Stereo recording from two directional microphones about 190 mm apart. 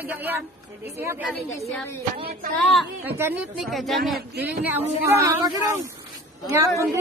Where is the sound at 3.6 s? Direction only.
Centre (ahead or behind).